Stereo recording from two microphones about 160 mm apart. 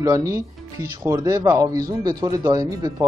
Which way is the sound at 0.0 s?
20° right (ahead or behind).